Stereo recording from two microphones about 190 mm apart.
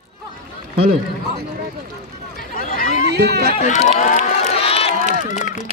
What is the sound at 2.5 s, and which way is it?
Chatter, 45° left (ahead or behind).